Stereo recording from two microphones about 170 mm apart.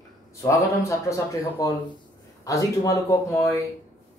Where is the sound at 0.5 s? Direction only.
20° left (ahead or behind).